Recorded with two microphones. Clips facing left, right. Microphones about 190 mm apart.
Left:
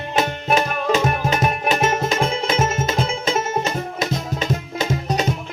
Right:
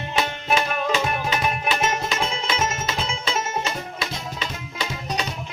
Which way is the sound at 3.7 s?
45° left (ahead or behind).